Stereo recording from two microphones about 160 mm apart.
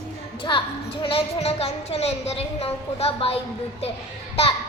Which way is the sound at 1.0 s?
40° left (ahead or behind).